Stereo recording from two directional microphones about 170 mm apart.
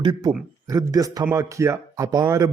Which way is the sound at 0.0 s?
25° right (ahead or behind).